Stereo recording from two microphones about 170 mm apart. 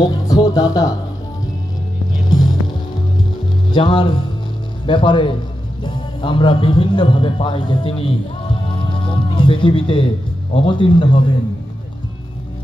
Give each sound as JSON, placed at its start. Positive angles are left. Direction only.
{"t": 0.0, "sound": "speech", "side_deg": 20}
{"t": 2.2, "sound": "music", "side_deg": 25}
{"t": 3.7, "sound": "a man's voice", "side_deg": 30}